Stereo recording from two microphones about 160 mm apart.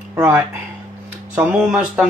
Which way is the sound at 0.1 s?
15° right (ahead or behind).